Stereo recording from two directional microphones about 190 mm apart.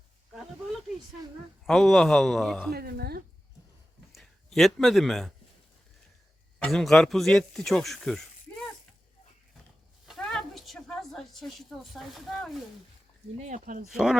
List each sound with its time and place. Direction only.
1.6 s a man's voice: centre (ahead or behind)
2.7 s speech: 55° right (ahead or behind)
4.1 s speech: centre (ahead or behind)
6.6 s speech: centre (ahead or behind)
10.1 s a sound: centre (ahead or behind)
13.4 s speech: 40° right (ahead or behind)
13.9 s a man's voice: centre (ahead or behind)